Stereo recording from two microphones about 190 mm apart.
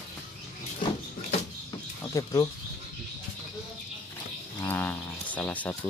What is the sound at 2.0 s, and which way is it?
Speech, 20° left (ahead or behind).